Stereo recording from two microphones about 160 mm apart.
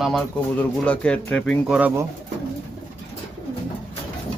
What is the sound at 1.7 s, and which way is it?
Speech, 10° right (ahead or behind).